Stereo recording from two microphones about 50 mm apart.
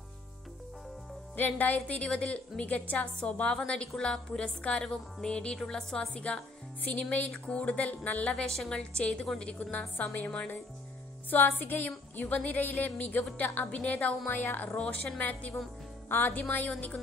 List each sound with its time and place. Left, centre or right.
1.3 s a woman's voice: left
2.0 s a woman's voice: centre
2.6 s a woman's voice: left